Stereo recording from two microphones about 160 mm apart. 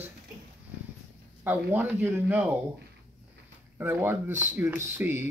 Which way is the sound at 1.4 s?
10° right (ahead or behind).